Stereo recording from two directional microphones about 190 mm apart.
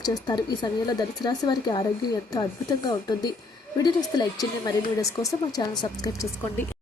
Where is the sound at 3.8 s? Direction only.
20° left (ahead or behind).